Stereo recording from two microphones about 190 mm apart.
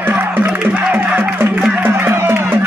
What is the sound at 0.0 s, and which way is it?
Music, 10° right (ahead or behind).